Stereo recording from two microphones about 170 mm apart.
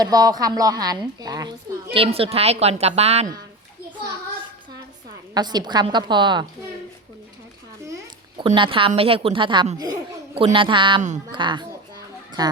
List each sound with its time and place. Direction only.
0.0 s a woman's voice: 20° right (ahead or behind); by 3.2 s 40° right (ahead or behind)
5.3 s a woman's voice: 25° right (ahead or behind)
8.4 s a woman's voice: 30° right (ahead or behind)